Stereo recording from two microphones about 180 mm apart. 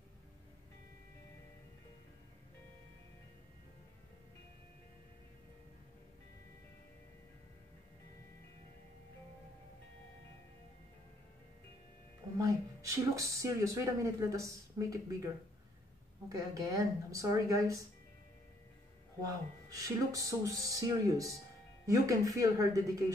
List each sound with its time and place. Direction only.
12.4 s a woman's voice: 15° right (ahead or behind)
16.3 s speech: 20° right (ahead or behind)
19.2 s speech: 20° right (ahead or behind)